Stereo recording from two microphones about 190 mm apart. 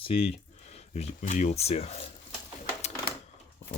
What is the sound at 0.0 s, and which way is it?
Speech, 30° left (ahead or behind).